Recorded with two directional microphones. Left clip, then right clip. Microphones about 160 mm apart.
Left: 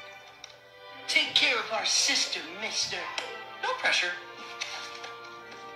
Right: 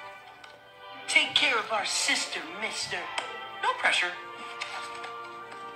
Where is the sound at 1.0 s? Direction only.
20° right (ahead or behind).